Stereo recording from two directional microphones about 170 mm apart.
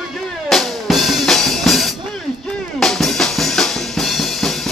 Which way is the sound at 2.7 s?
5° left (ahead or behind).